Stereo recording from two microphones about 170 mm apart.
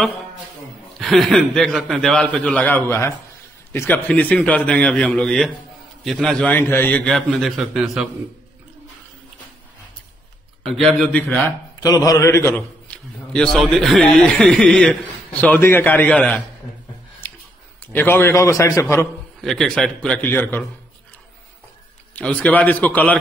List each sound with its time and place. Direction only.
0.9 s a man's voice: centre (ahead or behind)
7.1 s a man's voice: centre (ahead or behind)
10.6 s a man's voice: centre (ahead or behind)
11.8 s a man's voice: 20° left (ahead or behind)
17.9 s a man's voice: 15° left (ahead or behind)
19.4 s a man's voice: 5° left (ahead or behind)
22.1 s a man's voice: 10° left (ahead or behind)